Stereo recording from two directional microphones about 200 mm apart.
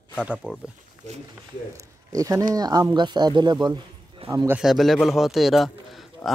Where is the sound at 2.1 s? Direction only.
15° right (ahead or behind).